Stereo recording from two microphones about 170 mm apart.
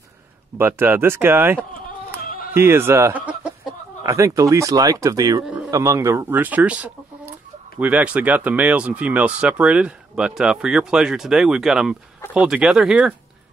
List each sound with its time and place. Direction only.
0.6 s speech: 15° right (ahead or behind)